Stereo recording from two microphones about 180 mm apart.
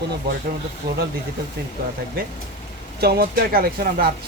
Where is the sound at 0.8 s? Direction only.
60° right (ahead or behind).